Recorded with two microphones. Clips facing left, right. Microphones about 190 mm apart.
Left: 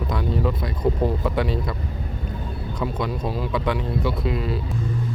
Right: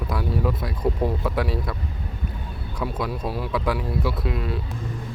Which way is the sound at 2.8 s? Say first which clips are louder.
Left 1 dB; 5° right (ahead or behind).